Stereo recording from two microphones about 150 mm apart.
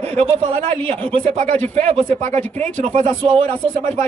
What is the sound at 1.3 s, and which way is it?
Speech, 55° right (ahead or behind).